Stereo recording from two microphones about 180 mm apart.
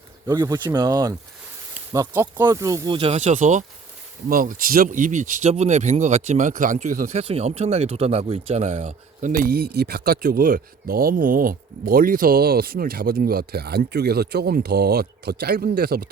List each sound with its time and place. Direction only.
0.3 s speech: 20° right (ahead or behind); by 16.0 s 60° right (ahead or behind)